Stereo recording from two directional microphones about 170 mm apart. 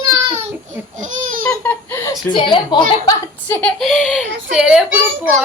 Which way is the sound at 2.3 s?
30° left (ahead or behind).